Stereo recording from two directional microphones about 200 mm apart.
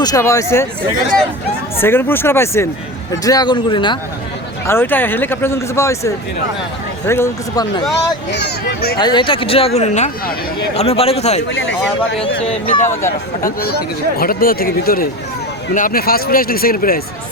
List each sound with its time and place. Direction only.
0.0 s speech: 15° left (ahead or behind)
1.8 s speech: 10° left (ahead or behind)
4.6 s speech: 10° left (ahead or behind)
8.3 s speech: 55° left (ahead or behind)
9.0 s a man's voice: 20° left (ahead or behind)
12.9 s speech: 15° left (ahead or behind)
14.2 s speech: 45° left (ahead or behind)